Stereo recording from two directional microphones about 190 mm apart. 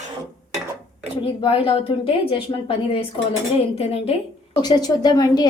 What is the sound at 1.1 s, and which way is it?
A woman's voice, 30° left (ahead or behind).